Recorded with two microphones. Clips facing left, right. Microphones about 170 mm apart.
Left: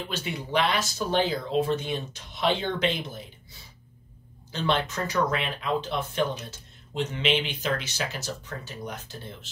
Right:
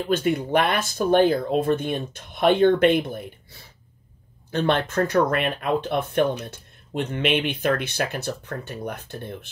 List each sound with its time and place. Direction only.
0.1 s speech: 50° right (ahead or behind)